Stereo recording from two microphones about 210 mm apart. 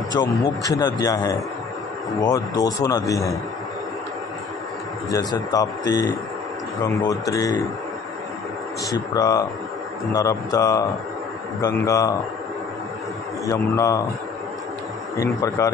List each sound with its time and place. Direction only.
0.1 s speech: 20° left (ahead or behind)
5.1 s speech: 15° left (ahead or behind)
8.9 s speech: 15° left (ahead or behind)
13.5 s speech: 15° left (ahead or behind)
15.1 s speech: 15° left (ahead or behind)